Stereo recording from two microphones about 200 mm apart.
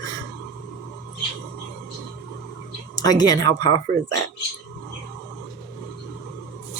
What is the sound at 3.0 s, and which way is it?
Speech, 20° left (ahead or behind).